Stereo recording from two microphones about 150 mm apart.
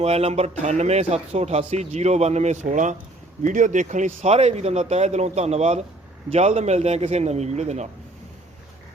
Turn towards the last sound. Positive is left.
turn(degrees=-50)  # may be behind; listen again after turning